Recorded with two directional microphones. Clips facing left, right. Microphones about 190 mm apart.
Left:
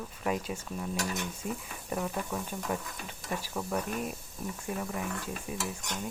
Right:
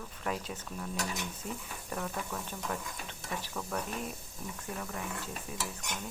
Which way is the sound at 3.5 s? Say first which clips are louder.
Left 4 dB; 20° left (ahead or behind).